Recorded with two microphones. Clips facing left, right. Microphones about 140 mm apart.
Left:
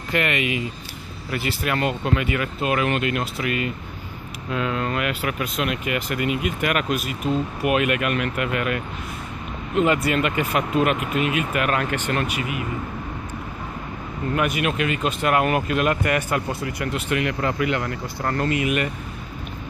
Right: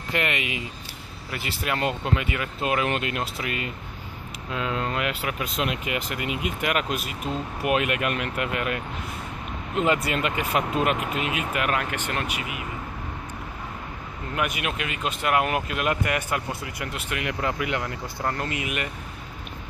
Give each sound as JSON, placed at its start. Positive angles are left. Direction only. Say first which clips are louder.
{"t": 0.1, "sound": "speech", "louder": "left 4 dB", "side_deg": -25}
{"t": 14.3, "sound": "speech", "louder": "left 5 dB", "side_deg": -15}